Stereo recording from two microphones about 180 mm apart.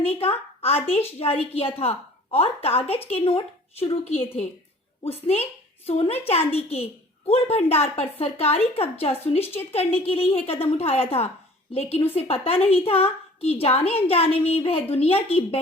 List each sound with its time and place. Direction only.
0.0 s a woman's voice: 35° left (ahead or behind)